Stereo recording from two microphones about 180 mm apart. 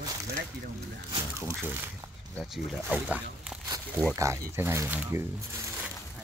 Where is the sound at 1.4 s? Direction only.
10° right (ahead or behind).